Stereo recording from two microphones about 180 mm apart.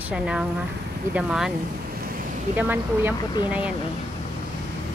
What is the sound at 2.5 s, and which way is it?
Speech, 10° right (ahead or behind).